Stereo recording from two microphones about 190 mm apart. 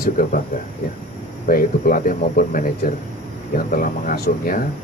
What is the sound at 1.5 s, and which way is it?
Speech, 50° left (ahead or behind).